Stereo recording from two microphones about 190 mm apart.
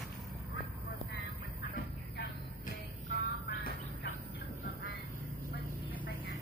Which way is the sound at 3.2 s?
55° left (ahead or behind).